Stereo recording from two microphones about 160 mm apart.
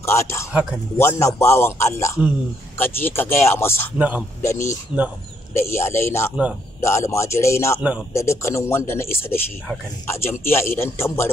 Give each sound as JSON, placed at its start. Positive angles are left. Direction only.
{"t": 0.0, "sound": "speech", "side_deg": 15}
{"t": 0.5, "sound": "speech", "side_deg": -10}
{"t": 0.9, "sound": "speech", "side_deg": 15}
{"t": 4.9, "sound": "speech", "side_deg": -10}
{"t": 5.5, "sound": "speech", "side_deg": 15}